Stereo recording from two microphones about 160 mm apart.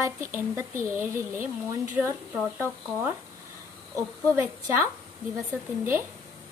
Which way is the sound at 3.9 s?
15° right (ahead or behind).